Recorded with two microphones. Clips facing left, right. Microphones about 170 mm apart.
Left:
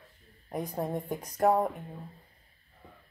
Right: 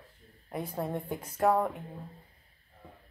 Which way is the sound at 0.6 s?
15° left (ahead or behind).